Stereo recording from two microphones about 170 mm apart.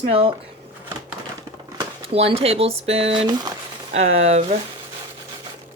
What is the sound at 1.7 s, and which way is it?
Speech, 35° right (ahead or behind).